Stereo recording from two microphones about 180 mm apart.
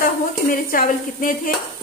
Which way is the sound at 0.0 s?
50° left (ahead or behind).